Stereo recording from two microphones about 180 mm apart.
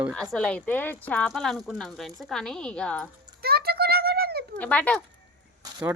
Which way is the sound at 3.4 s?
60° right (ahead or behind).